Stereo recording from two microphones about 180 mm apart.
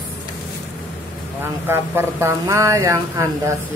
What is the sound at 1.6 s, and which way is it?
Speech, 15° right (ahead or behind).